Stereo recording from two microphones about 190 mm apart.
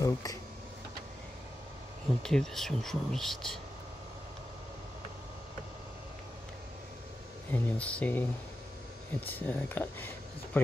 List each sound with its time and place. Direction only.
0.0 s speech: 20° left (ahead or behind)
2.2 s speech: 5° left (ahead or behind)
7.5 s speech: 5° left (ahead or behind)